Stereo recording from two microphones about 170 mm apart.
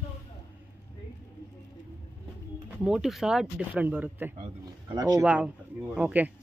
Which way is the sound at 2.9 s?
Centre (ahead or behind).